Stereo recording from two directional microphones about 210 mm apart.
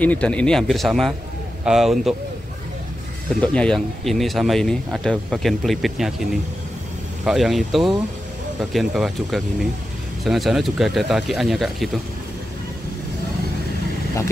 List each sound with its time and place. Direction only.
0.0 s speech: 5° left (ahead or behind)
3.3 s speech: 5° left (ahead or behind)
7.2 s speech: centre (ahead or behind)